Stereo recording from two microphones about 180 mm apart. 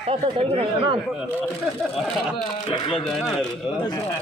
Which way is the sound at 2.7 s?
25° left (ahead or behind).